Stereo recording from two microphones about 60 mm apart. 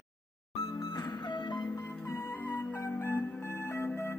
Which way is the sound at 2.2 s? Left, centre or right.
Left.